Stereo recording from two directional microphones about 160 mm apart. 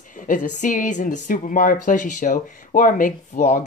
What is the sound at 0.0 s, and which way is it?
Speech, 55° left (ahead or behind).